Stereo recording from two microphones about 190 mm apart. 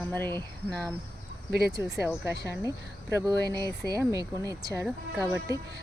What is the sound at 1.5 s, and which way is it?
Speech, 55° right (ahead or behind).